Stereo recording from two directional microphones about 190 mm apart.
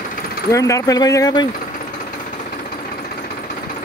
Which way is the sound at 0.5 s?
15° left (ahead or behind).